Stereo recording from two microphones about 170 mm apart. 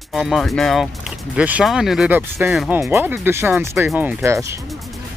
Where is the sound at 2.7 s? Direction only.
10° right (ahead or behind).